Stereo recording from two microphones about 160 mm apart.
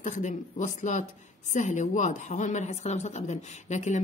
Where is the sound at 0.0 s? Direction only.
50° left (ahead or behind).